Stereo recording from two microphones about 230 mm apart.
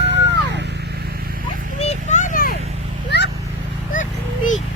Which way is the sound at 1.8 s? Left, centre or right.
Left.